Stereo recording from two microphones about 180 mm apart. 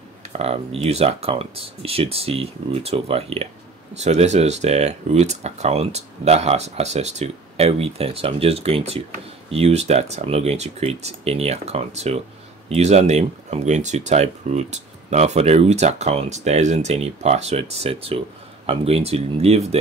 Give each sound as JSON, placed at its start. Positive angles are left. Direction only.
{"t": 0.3, "sound": "speech", "side_deg": -35}